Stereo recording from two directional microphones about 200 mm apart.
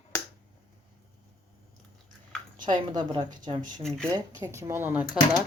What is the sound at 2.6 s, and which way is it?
A woman's voice, 20° right (ahead or behind).